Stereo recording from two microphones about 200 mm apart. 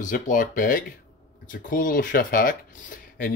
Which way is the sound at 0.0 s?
40° left (ahead or behind).